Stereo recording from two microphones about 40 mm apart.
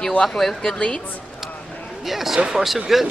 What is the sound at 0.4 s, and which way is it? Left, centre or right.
Speech, centre.